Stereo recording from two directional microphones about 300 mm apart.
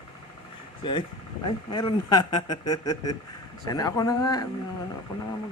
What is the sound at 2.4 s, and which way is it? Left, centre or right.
Speech, left.